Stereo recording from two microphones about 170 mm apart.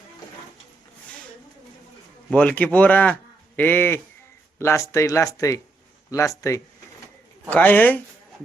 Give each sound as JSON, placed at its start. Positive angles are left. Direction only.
{"t": 2.3, "sound": "speech", "side_deg": 10}
{"t": 7.5, "sound": "speech", "side_deg": 10}